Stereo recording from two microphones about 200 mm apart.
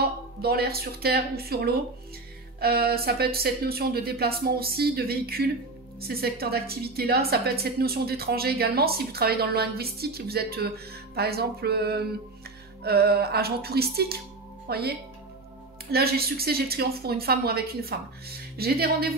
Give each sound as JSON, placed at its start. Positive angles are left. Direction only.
{"t": 0.4, "sound": "a woman's voice", "side_deg": -50}